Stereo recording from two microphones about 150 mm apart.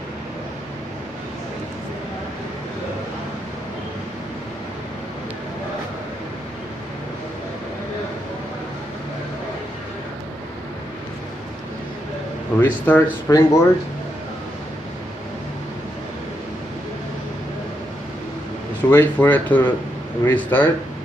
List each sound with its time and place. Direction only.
12.5 s speech: 10° left (ahead or behind)
13.3 s speech: 20° left (ahead or behind)
18.9 s speech: 15° left (ahead or behind)